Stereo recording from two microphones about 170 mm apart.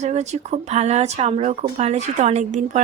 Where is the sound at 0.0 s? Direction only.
40° right (ahead or behind).